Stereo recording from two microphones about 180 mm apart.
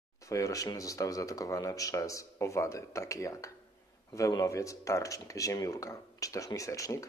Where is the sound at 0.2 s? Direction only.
20° left (ahead or behind).